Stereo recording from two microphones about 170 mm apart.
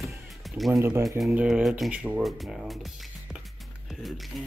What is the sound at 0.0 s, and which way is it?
Music, centre (ahead or behind).